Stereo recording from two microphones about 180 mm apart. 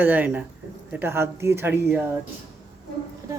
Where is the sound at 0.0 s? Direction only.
10° right (ahead or behind).